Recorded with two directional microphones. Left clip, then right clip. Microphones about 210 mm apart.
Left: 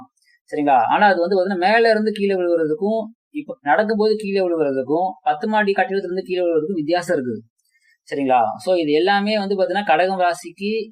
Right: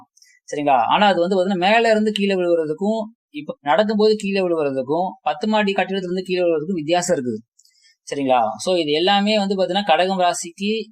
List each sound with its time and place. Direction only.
0.5 s speech: 40° right (ahead or behind)